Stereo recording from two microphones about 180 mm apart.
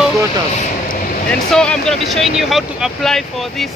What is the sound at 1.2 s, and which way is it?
Speech, 5° left (ahead or behind).